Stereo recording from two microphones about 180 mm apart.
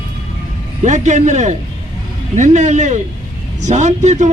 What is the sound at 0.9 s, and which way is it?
A man's voice, 40° right (ahead or behind).